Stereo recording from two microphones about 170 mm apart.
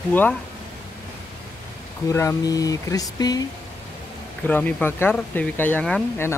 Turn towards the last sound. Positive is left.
turn(degrees=10)  # may be behind; listen again after turning